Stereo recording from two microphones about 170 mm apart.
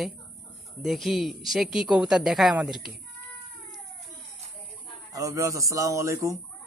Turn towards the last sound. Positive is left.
turn(degrees=-20)  # may be behind; listen again after turning